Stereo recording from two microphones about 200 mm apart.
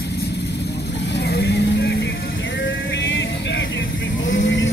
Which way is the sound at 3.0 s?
65° left (ahead or behind).